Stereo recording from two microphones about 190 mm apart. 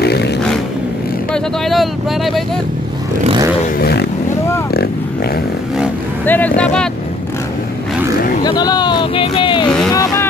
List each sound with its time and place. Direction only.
0.0 s vehicle: 60° left (ahead or behind)
1.3 s speech: centre (ahead or behind)
3.7 s vehicle: 55° left (ahead or behind)
6.2 s speech: 10° left (ahead or behind)
8.5 s speech: 20° left (ahead or behind)